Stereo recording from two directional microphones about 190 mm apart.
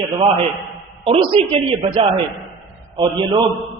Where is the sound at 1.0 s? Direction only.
30° right (ahead or behind).